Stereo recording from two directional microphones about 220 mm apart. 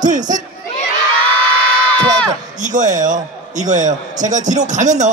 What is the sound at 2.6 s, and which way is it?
A man's voice, 35° right (ahead or behind).